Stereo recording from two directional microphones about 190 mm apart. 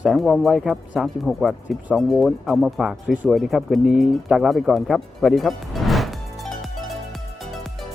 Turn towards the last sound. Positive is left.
turn(degrees=0)  # may be behind; listen again after turning